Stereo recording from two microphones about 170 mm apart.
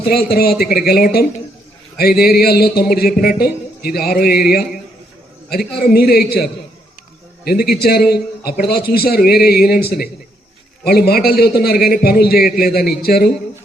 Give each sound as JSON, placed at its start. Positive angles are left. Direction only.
{"t": 0.0, "sound": "a man's voice", "side_deg": 65}
{"t": 7.4, "sound": "a man's voice", "side_deg": 65}